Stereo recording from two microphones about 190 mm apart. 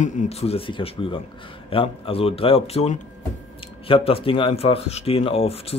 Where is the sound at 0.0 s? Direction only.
35° left (ahead or behind).